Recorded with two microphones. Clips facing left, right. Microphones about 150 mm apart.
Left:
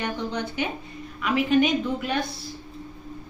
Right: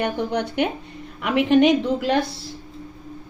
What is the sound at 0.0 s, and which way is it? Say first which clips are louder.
A woman's voice: right 5 dB; 60° right (ahead or behind).